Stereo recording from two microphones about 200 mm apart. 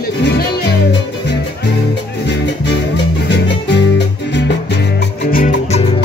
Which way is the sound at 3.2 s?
60° left (ahead or behind).